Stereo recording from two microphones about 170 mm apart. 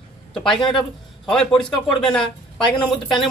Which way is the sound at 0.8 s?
5° left (ahead or behind).